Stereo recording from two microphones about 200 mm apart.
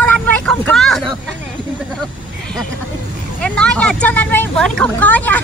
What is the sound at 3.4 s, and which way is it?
Speech, 5° left (ahead or behind).